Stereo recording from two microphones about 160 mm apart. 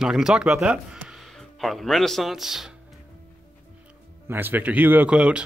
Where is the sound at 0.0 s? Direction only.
5° right (ahead or behind).